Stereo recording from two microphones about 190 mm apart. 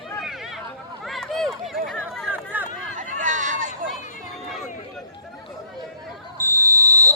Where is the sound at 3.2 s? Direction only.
45° right (ahead or behind).